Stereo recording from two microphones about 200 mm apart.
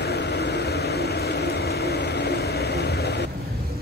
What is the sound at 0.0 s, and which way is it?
Vehicle, 55° left (ahead or behind).